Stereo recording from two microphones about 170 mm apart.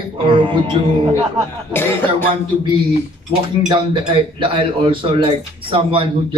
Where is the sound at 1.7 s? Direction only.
15° left (ahead or behind).